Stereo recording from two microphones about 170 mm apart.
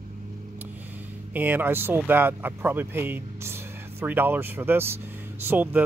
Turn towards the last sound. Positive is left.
turn(degrees=-10)  # may be behind; listen again after turning